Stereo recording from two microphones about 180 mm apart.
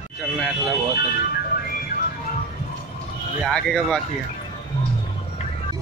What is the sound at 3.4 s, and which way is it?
Speech, centre (ahead or behind).